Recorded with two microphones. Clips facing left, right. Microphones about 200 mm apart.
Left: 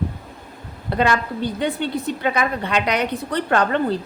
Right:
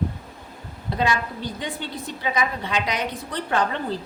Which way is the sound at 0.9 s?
60° left (ahead or behind).